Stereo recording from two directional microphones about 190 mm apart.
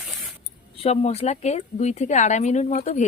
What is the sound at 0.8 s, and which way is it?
Speech, 35° left (ahead or behind).